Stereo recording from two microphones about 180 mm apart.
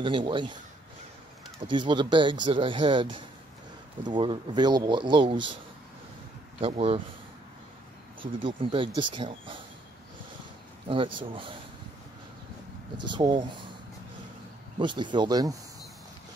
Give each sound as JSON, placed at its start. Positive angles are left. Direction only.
{"t": 0.0, "sound": "speech", "side_deg": -25}
{"t": 1.6, "sound": "speech", "side_deg": -25}
{"t": 6.6, "sound": "speech", "side_deg": -35}
{"t": 8.4, "sound": "speech", "side_deg": -30}
{"t": 10.9, "sound": "speech", "side_deg": -30}
{"t": 13.0, "sound": "speech", "side_deg": -25}
{"t": 14.8, "sound": "speech", "side_deg": -25}